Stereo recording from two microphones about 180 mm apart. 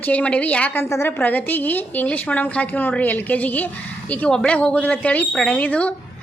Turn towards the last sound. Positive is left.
turn(degrees=5)  # may be behind; listen again after turning